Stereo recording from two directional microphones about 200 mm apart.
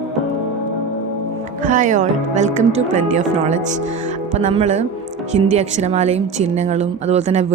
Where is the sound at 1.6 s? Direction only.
40° right (ahead or behind).